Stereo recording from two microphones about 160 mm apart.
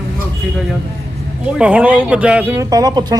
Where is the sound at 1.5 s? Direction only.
5° right (ahead or behind).